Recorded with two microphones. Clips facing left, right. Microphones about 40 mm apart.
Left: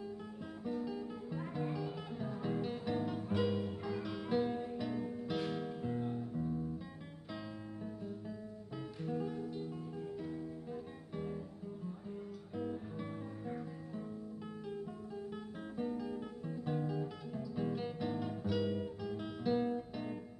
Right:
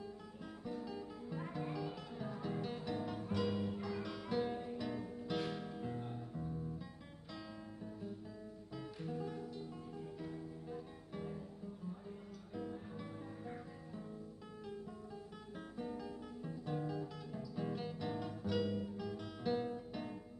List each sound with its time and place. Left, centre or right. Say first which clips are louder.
0.7 s guitar: left 5 dB; centre
2.4 s music: left 4 dB; centre
3.5 s guitar: left 2 dB; centre
9.0 s music: left 5 dB; centre
10.2 s guitar: left 4 dB; centre
12.5 s music: left 4 dB; centre
15.9 s guitar: left 5 dB; centre